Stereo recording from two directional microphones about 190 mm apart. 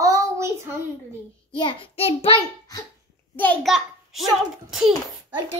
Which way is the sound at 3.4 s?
10° left (ahead or behind).